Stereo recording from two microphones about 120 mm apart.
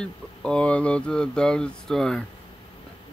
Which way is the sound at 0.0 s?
5° left (ahead or behind).